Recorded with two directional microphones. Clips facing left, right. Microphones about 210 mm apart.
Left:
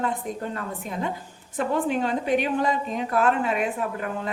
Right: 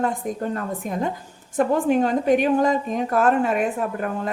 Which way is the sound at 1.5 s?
45° right (ahead or behind).